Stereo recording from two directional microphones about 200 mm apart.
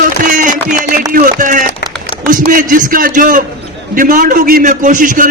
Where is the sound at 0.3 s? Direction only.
40° right (ahead or behind).